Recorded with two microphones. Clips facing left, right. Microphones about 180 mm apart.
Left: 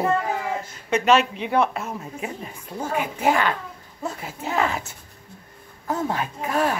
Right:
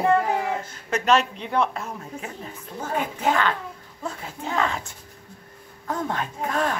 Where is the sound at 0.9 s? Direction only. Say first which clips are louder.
Left 2 dB; 5° left (ahead or behind).